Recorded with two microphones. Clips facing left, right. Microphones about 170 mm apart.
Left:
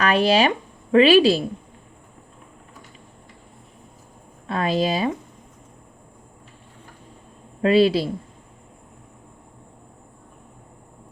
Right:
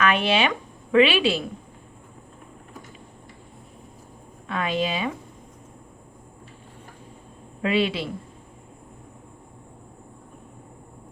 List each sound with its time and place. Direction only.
0.0 s a woman's voice: 35° left (ahead or behind)
4.4 s speech: 35° left (ahead or behind)
7.6 s speech: 35° left (ahead or behind)